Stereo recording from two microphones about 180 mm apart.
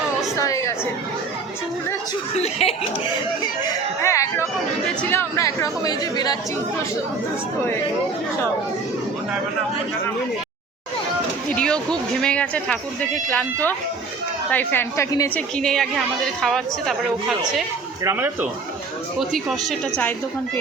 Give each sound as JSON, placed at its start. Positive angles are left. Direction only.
{"t": 0.3, "sound": "a sound", "side_deg": 15}
{"t": 2.3, "sound": "speech", "side_deg": 35}
{"t": 3.4, "sound": "speech", "side_deg": 20}
{"t": 11.5, "sound": "a woman's voice", "side_deg": 5}
{"t": 15.4, "sound": "a woman's voice", "side_deg": 5}
{"t": 18.0, "sound": "speech", "side_deg": -15}